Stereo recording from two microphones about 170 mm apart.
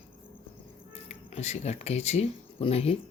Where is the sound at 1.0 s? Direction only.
40° left (ahead or behind).